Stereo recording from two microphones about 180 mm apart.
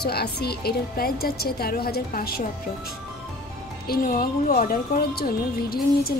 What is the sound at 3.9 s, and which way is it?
Speech, 50° left (ahead or behind).